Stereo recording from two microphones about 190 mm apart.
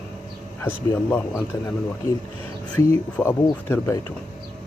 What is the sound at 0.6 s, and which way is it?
Speech, 10° left (ahead or behind).